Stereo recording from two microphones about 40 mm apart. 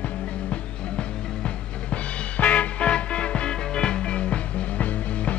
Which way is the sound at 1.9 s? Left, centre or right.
Left.